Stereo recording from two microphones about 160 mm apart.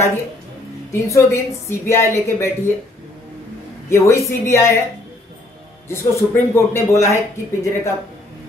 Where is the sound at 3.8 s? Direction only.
20° left (ahead or behind).